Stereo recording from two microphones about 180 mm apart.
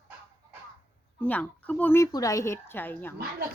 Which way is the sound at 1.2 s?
10° left (ahead or behind).